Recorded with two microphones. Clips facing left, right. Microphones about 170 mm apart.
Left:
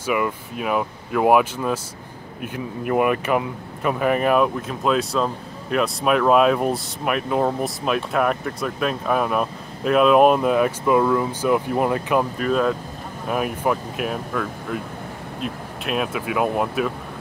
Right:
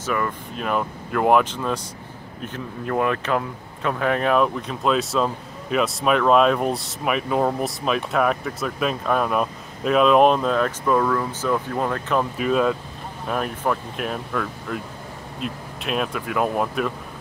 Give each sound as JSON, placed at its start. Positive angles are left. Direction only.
{"t": 0.0, "sound": "speech", "side_deg": 10}
{"t": 12.4, "sound": "speech", "side_deg": 0}